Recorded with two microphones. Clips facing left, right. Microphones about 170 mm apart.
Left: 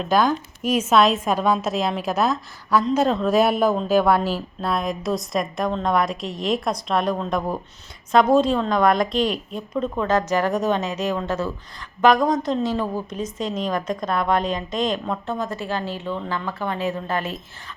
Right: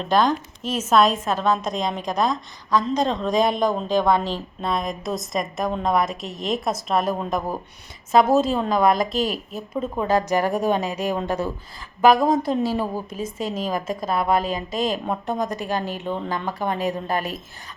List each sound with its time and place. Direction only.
0.0 s a woman's voice: 5° left (ahead or behind); by 17.4 s 15° right (ahead or behind)